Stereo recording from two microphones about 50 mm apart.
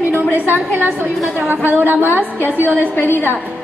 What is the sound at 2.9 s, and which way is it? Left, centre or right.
Speech, left.